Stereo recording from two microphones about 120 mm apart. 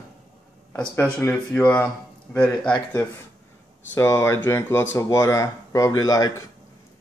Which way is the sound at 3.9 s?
20° left (ahead or behind).